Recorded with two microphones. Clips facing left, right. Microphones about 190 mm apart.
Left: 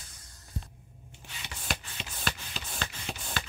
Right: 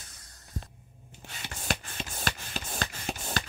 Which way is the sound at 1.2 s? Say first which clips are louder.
Right 3 dB; 45° right (ahead or behind).